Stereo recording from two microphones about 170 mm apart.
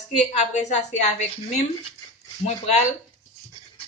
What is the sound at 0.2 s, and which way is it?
A man's voice, 45° left (ahead or behind).